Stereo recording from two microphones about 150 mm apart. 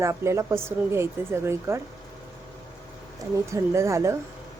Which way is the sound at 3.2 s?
20° right (ahead or behind).